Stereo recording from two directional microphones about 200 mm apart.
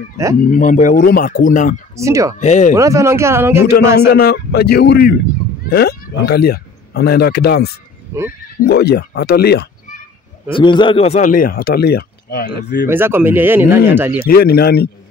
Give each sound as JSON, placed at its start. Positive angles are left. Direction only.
{"t": 0.4, "sound": "speech", "side_deg": 40}
{"t": 2.0, "sound": "speech", "side_deg": -15}
{"t": 2.3, "sound": "speech", "side_deg": 40}
{"t": 2.7, "sound": "speech", "side_deg": -15}
{"t": 4.1, "sound": "speech", "side_deg": 50}
{"t": 10.5, "sound": "speech", "side_deg": 25}
{"t": 12.8, "sound": "speech", "side_deg": -10}
{"t": 14.2, "sound": "speech", "side_deg": 50}